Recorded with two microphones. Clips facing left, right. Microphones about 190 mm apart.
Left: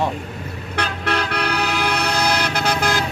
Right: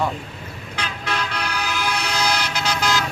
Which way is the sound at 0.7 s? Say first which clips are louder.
Left 5 dB; 60° left (ahead or behind).